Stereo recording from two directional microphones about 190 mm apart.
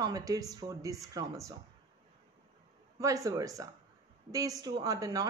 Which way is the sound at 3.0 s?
15° right (ahead or behind).